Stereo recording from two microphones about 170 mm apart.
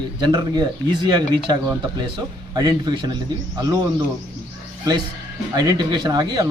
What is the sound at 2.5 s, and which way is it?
Speech, 25° right (ahead or behind).